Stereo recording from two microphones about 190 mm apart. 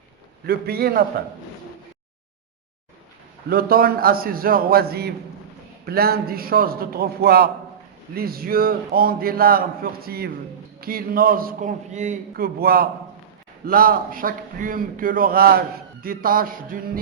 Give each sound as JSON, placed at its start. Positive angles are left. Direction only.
{"t": 0.4, "sound": "a man's voice", "side_deg": -55}
{"t": 3.5, "sound": "a man's voice", "side_deg": -50}
{"t": 12.3, "sound": "a man's voice", "side_deg": -55}